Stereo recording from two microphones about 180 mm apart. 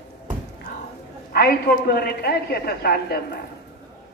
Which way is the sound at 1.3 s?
60° left (ahead or behind).